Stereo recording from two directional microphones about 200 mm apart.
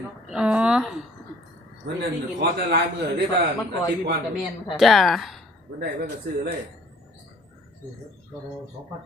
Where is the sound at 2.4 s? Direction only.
60° right (ahead or behind).